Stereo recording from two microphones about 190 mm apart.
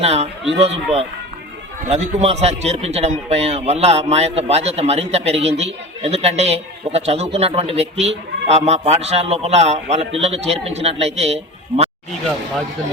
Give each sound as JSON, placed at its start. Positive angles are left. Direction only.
{"t": 0.0, "sound": "a man's voice", "side_deg": -35}